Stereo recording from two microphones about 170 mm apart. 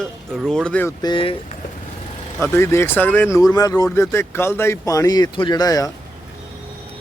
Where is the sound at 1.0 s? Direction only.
30° left (ahead or behind).